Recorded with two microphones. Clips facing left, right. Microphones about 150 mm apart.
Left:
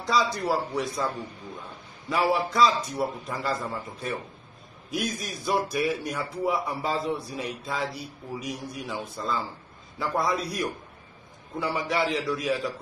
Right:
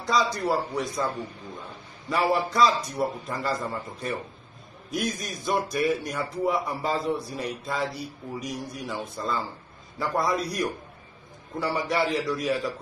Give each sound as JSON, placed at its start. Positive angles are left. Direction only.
{"t": 0.0, "sound": "a man's voice", "side_deg": 0}